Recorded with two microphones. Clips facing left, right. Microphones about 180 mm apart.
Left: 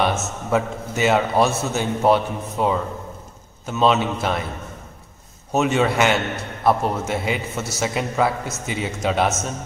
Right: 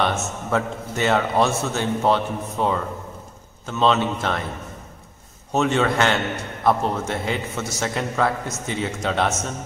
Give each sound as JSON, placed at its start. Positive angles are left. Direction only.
{"t": 0.0, "sound": "a man's voice", "side_deg": 10}
{"t": 5.5, "sound": "a man's voice", "side_deg": 10}